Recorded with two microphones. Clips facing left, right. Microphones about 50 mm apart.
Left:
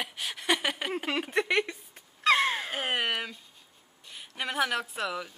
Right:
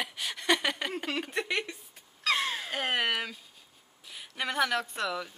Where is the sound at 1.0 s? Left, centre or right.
Centre.